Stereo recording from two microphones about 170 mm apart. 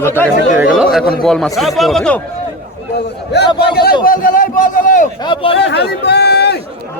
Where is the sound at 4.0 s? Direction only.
55° left (ahead or behind).